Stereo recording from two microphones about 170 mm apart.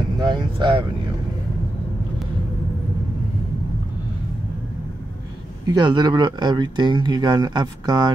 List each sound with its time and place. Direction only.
0.2 s speech: 25° right (ahead or behind)
5.7 s speech: 25° right (ahead or behind)